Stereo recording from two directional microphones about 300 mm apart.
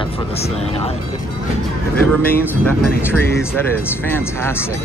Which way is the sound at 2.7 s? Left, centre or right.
Centre.